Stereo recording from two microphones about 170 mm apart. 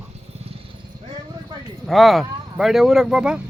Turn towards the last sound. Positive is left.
turn(degrees=-5)  # may be behind; listen again after turning